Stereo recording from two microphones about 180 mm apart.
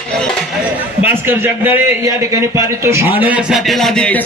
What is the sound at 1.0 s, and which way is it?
A man's voice, 10° right (ahead or behind).